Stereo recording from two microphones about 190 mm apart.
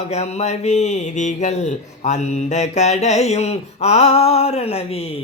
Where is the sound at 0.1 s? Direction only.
35° left (ahead or behind).